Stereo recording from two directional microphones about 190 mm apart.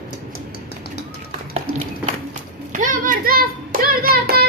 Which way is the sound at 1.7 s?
40° right (ahead or behind).